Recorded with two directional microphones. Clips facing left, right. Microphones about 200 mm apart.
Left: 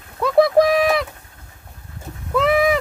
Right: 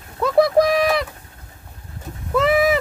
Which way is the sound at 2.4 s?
Centre (ahead or behind).